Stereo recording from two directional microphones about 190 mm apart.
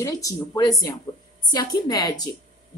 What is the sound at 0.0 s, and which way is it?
A woman's voice, 20° left (ahead or behind).